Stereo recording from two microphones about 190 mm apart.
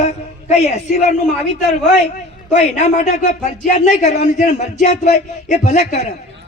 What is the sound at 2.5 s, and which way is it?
Speech, 40° left (ahead or behind).